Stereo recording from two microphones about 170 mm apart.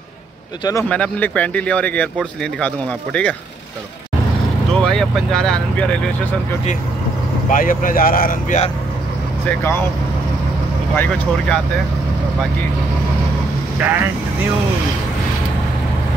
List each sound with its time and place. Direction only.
0.8 s speech: 5° left (ahead or behind)
4.8 s speech: 5° left (ahead or behind)
7.4 s speech: 50° left (ahead or behind)
9.6 s speech: 15° left (ahead or behind)
11.0 s speech: 5° left (ahead or behind)
13.7 s speech: 10° right (ahead or behind)